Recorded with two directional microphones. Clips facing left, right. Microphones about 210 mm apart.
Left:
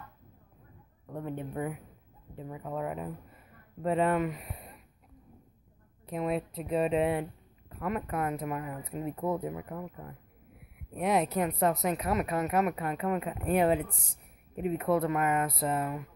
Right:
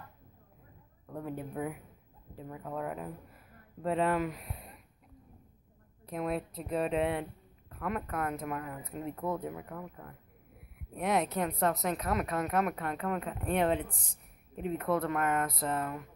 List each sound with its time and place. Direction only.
1.0 s speech: centre (ahead or behind)
6.0 s speech: centre (ahead or behind)